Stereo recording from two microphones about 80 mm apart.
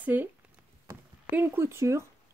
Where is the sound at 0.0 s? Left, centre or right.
Right.